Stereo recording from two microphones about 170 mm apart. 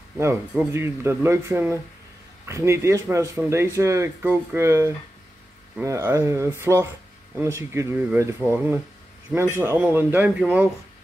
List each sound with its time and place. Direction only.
0.2 s speech: 15° right (ahead or behind)